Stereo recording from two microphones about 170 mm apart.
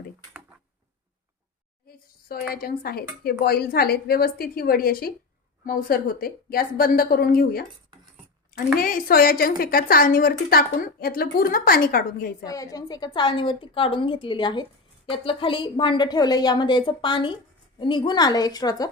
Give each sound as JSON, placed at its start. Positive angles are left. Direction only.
{"t": 1.9, "sound": "a sound", "side_deg": 60}
{"t": 2.5, "sound": "speech", "side_deg": 65}
{"t": 12.4, "sound": "a woman's voice", "side_deg": 20}